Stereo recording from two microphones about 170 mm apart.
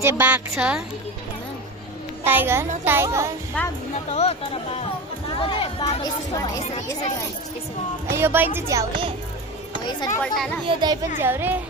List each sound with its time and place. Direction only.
0.0 s a woman's voice: 15° right (ahead or behind)
2.2 s a woman's voice: 10° right (ahead or behind)
3.6 s a child's voice: 5° left (ahead or behind)
4.1 s speech: 35° left (ahead or behind)
8.1 s a woman's voice: 15° right (ahead or behind)
9.8 s speech: 25° left (ahead or behind)
10.3 s a child's voice: centre (ahead or behind)
10.7 s speech: 25° right (ahead or behind)
11.2 s a woman's voice: 10° right (ahead or behind)